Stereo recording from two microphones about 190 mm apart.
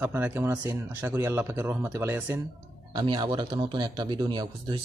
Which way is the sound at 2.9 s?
20° right (ahead or behind).